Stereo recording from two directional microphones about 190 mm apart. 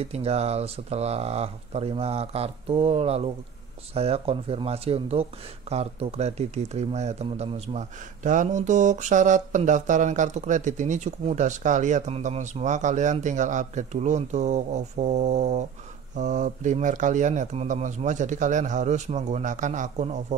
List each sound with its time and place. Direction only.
0.0 s speech: 35° right (ahead or behind)